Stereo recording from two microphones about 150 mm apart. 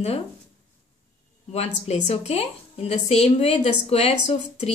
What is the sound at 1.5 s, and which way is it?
A woman's voice, 45° left (ahead or behind).